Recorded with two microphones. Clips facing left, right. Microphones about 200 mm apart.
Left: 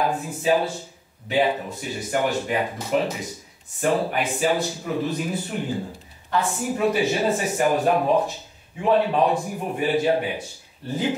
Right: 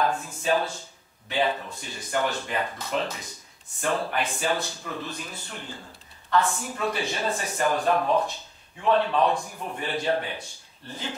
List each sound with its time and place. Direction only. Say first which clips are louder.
0.0 s a man's voice: left 3 dB; 15° left (ahead or behind)